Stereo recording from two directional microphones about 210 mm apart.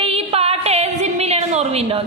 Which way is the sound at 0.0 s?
25° right (ahead or behind).